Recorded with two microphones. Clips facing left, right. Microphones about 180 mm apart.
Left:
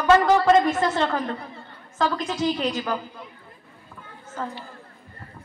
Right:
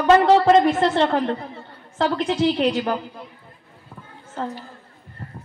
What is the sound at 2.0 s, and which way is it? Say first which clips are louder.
Speech: right 4 dB; 65° right (ahead or behind).